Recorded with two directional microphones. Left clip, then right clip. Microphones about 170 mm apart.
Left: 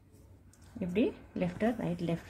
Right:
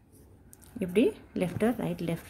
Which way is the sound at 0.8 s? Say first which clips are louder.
Right 6 dB; 35° right (ahead or behind).